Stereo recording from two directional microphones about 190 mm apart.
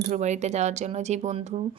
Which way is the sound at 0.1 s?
40° right (ahead or behind).